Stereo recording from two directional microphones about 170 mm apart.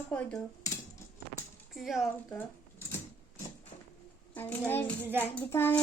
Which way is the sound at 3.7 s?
30° left (ahead or behind).